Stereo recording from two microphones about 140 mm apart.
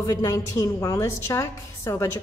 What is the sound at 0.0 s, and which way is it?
A woman's voice, 25° left (ahead or behind).